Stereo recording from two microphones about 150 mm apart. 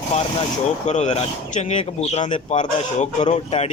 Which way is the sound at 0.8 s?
50° left (ahead or behind).